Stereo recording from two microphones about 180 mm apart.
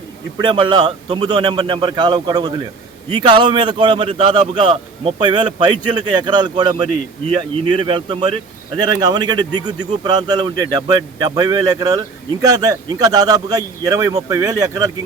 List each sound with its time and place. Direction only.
0.3 s speech: 25° right (ahead or behind)